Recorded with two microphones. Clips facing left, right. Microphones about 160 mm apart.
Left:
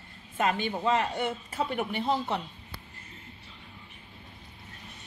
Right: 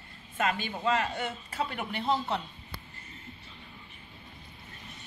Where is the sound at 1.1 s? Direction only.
10° left (ahead or behind).